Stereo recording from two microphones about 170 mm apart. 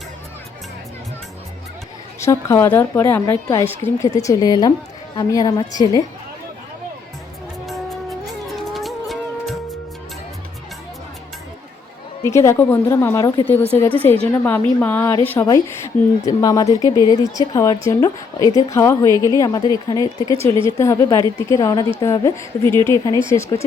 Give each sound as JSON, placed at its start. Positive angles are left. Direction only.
{"t": 2.2, "sound": "a woman's voice", "side_deg": 15}
{"t": 7.7, "sound": "music", "side_deg": 0}
{"t": 12.2, "sound": "a woman's voice", "side_deg": 15}
{"t": 13.9, "sound": "a woman's voice", "side_deg": 10}